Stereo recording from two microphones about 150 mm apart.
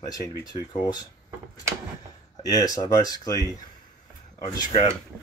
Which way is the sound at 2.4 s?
25° left (ahead or behind).